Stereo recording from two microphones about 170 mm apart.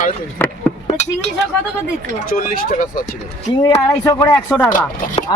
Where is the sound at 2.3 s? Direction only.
55° left (ahead or behind).